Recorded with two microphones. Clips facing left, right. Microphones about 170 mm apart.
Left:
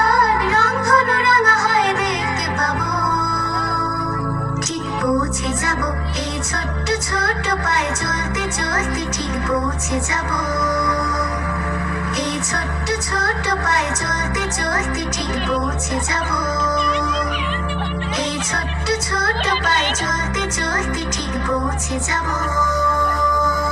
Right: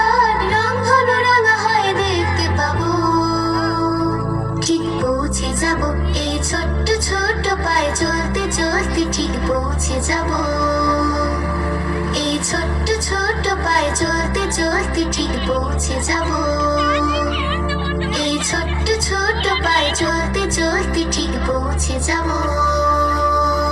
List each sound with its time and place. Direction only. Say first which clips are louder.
0.0 s music: right 1 dB; 30° right (ahead or behind)
6.9 s music: right 2 dB; 30° right (ahead or behind)
12.9 s music: right 2 dB; 30° right (ahead or behind)
18.9 s music: right 2 dB; 30° right (ahead or behind)